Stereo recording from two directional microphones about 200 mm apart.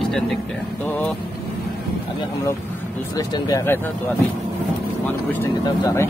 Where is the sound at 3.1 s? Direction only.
15° left (ahead or behind).